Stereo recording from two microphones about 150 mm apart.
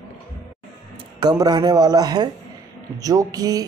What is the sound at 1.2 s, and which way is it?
Speech, 30° right (ahead or behind).